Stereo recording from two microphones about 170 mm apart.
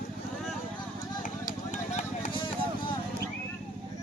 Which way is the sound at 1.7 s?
45° left (ahead or behind).